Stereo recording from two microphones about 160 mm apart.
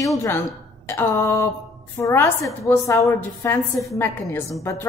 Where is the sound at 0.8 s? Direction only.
15° left (ahead or behind).